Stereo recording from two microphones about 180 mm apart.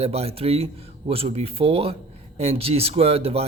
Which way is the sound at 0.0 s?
35° right (ahead or behind).